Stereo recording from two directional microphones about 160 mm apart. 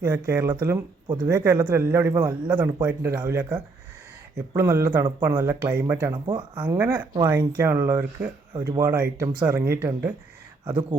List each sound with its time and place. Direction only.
0.0 s speech: 15° right (ahead or behind)
6.2 s speech: 30° right (ahead or behind)
6.6 s speech: 15° right (ahead or behind)